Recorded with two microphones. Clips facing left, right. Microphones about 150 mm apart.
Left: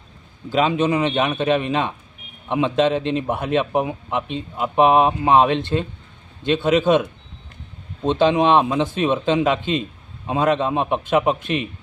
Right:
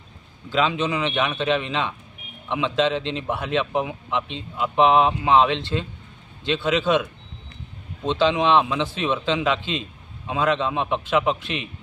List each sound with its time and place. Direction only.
0.5 s a man's voice: 45° left (ahead or behind)